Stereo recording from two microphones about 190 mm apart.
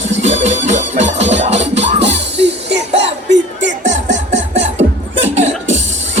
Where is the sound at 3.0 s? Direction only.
65° right (ahead or behind).